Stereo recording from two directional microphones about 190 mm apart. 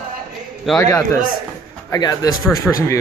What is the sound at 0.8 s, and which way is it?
Speech, 15° left (ahead or behind).